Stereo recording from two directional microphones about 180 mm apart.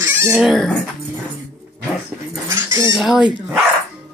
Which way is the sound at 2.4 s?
15° right (ahead or behind).